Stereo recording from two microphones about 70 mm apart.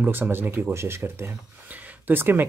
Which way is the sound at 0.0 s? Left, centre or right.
Right.